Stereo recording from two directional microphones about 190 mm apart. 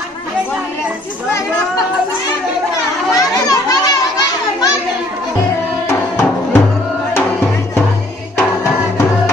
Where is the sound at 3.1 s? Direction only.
20° left (ahead or behind).